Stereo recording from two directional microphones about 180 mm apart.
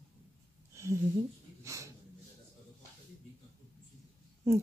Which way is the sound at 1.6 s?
15° right (ahead or behind).